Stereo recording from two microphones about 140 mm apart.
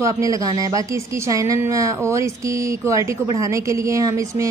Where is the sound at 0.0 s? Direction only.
25° right (ahead or behind).